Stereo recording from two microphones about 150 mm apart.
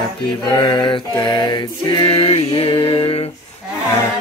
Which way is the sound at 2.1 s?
40° left (ahead or behind).